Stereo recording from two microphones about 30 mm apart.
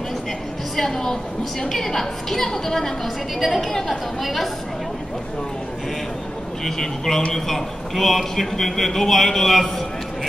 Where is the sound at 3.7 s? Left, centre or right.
Centre.